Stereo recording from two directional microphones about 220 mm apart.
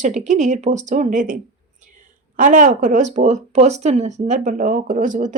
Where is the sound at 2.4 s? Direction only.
35° right (ahead or behind).